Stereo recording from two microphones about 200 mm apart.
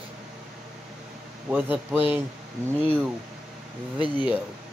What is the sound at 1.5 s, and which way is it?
Speech, 10° right (ahead or behind).